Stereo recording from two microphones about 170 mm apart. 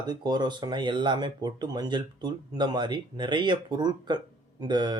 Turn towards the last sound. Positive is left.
turn(degrees=-25)  # may be behind; listen again after turning